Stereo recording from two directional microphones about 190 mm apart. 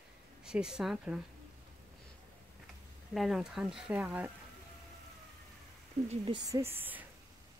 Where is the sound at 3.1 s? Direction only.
Centre (ahead or behind).